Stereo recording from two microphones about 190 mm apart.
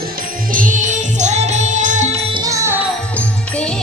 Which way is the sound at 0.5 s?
45° right (ahead or behind).